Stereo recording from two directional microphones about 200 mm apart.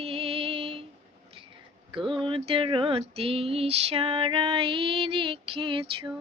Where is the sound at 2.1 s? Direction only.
25° right (ahead or behind).